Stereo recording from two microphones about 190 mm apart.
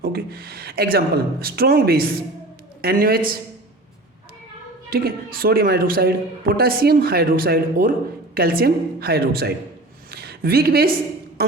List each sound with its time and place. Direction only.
0.0 s a man's voice: 55° right (ahead or behind)
4.9 s a man's voice: 50° right (ahead or behind)
10.1 s a sound: 55° right (ahead or behind)
11.4 s a woman's voice: 55° right (ahead or behind)